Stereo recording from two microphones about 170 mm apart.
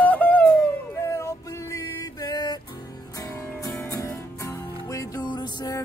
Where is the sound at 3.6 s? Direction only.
20° left (ahead or behind).